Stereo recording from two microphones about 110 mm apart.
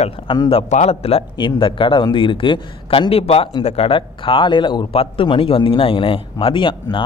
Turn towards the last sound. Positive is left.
turn(degrees=50)  # may be behind; listen again after turning